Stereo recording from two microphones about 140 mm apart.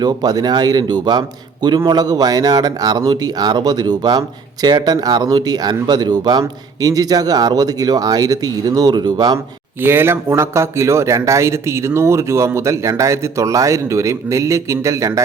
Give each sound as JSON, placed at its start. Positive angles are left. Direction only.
{"t": 0.0, "sound": "speech", "side_deg": -25}
{"t": 9.8, "sound": "speech", "side_deg": -15}